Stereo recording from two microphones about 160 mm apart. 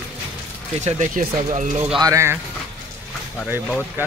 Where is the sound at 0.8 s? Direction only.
45° right (ahead or behind).